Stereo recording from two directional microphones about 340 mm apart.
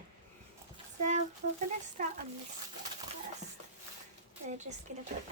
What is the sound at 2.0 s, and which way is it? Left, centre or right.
Speech, right.